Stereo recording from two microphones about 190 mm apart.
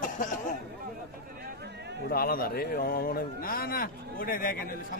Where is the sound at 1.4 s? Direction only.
60° right (ahead or behind).